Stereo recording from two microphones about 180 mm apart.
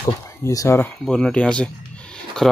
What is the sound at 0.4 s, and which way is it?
Speech, 15° left (ahead or behind).